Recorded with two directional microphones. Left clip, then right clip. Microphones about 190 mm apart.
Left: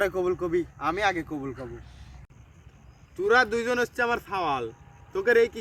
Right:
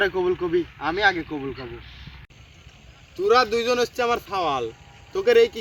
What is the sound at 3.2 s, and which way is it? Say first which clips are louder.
Speech: right 3 dB; 25° left (ahead or behind).